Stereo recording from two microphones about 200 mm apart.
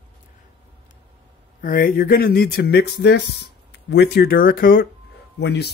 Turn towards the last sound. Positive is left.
turn(degrees=55)  # may be behind; listen again after turning